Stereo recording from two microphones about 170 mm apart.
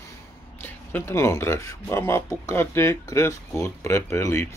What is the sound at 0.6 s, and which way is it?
Speech, 15° left (ahead or behind).